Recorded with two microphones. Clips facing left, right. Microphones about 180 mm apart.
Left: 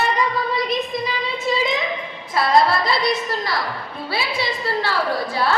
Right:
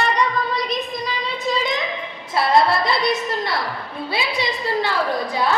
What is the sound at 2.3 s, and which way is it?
Speech, 25° right (ahead or behind).